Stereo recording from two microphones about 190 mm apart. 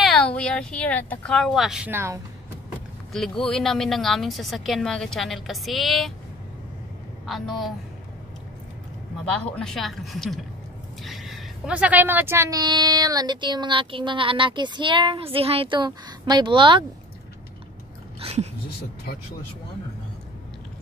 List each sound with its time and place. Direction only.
0.0 s speech: 5° left (ahead or behind)
3.1 s speech: 5° left (ahead or behind)
7.2 s speech: centre (ahead or behind)
9.2 s a woman's voice: 5° left (ahead or behind); by 16.8 s 25° right (ahead or behind)
18.2 s a sound: 35° right (ahead or behind)